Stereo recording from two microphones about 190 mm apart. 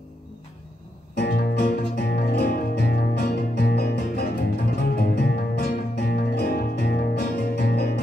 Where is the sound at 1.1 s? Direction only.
55° left (ahead or behind).